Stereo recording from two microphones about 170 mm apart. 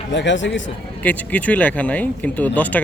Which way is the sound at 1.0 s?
10° left (ahead or behind).